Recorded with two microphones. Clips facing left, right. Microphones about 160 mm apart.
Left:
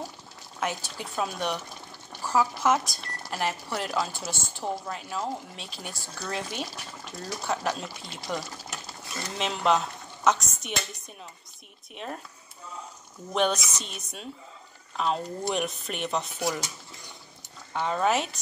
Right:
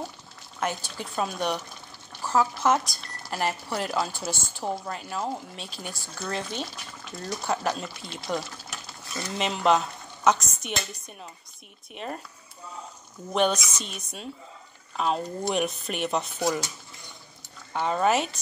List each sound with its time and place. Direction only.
0.6 s a woman's voice: centre (ahead or behind)
13.3 s a woman's voice: centre (ahead or behind)
17.7 s a woman's voice: centre (ahead or behind)